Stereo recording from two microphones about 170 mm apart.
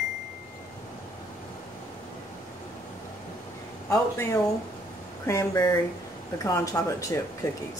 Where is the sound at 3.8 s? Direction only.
20° left (ahead or behind).